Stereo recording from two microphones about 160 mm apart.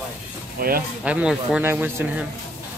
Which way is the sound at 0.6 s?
70° right (ahead or behind).